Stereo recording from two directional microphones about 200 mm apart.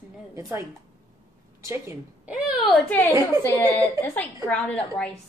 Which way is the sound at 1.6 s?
10° right (ahead or behind).